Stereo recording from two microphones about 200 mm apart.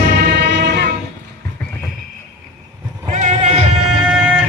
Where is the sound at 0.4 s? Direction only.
60° right (ahead or behind).